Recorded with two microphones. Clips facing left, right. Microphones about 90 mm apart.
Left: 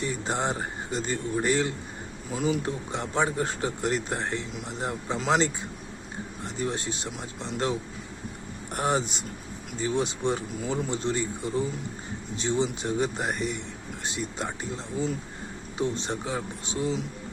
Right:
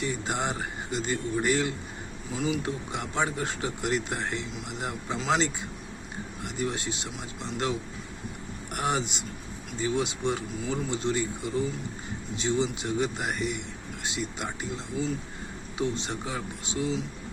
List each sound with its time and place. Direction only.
0.0 s a man's voice: 35° left (ahead or behind)